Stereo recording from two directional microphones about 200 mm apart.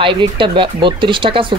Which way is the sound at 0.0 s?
25° right (ahead or behind).